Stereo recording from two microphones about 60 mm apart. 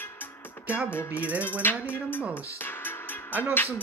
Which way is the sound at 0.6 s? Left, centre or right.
Right.